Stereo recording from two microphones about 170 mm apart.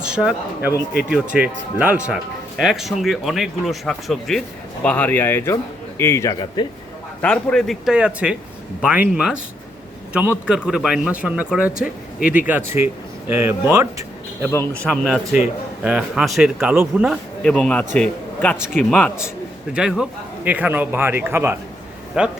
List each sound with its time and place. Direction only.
0.0 s a man's voice: 5° right (ahead or behind)
2.6 s a man's voice: centre (ahead or behind); by 6.7 s 15° left (ahead or behind)
7.2 s a man's voice: 5° left (ahead or behind)
12.5 s a man's voice: 10° right (ahead or behind)
14.5 s a man's voice: 15° left (ahead or behind)
15.0 s speech: centre (ahead or behind)
17.5 s a man's voice: 5° left (ahead or behind)